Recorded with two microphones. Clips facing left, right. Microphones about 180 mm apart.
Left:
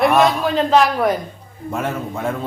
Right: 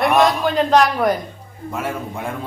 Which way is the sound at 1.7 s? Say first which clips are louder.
Left 2 dB; 10° right (ahead or behind).